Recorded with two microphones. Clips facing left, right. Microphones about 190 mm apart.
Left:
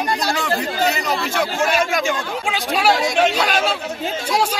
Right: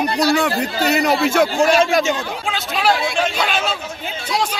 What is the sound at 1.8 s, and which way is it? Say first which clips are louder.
Speech: right 4 dB; 25° right (ahead or behind).